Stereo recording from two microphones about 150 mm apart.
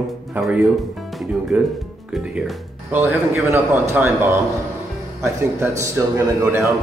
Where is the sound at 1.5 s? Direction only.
5° right (ahead or behind).